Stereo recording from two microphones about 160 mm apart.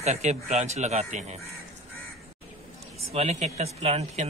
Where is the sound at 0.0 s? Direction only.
45° right (ahead or behind).